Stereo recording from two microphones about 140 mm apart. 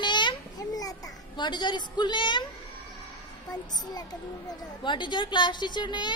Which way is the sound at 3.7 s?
30° left (ahead or behind).